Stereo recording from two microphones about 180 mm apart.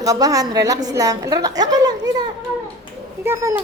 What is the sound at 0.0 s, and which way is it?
A woman's voice, 20° right (ahead or behind).